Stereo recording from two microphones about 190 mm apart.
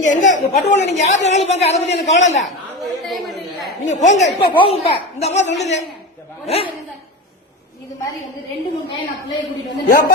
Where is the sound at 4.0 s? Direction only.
40° left (ahead or behind).